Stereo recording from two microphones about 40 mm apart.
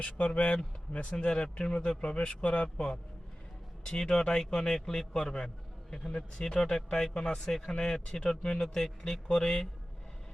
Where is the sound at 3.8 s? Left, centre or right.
Centre.